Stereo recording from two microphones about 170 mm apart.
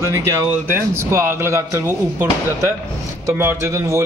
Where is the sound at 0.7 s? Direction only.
15° right (ahead or behind).